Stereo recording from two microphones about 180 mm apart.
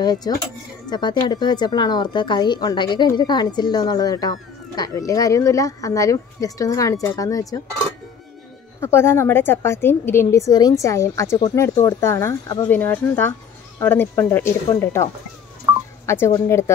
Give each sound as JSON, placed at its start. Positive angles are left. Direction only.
{"t": 0.0, "sound": "a woman's voice", "side_deg": 25}
{"t": 8.8, "sound": "a woman's voice", "side_deg": 15}
{"t": 15.7, "sound": "telephone dialing", "side_deg": -15}
{"t": 16.1, "sound": "a woman's voice", "side_deg": 15}